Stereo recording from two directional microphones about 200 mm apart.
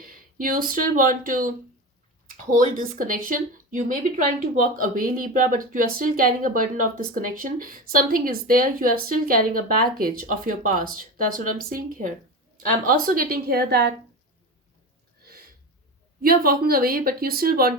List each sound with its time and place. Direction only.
0.0 s speech: 45° right (ahead or behind)
15.2 s a sound: 50° right (ahead or behind)
16.2 s speech: 45° right (ahead or behind)